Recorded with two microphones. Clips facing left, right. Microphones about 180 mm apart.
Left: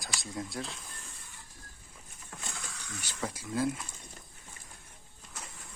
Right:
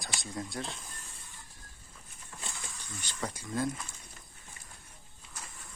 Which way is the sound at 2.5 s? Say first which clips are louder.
Left 2 dB; 75° left (ahead or behind).